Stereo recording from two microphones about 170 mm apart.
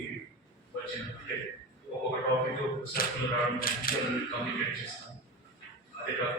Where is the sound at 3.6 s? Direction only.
60° left (ahead or behind).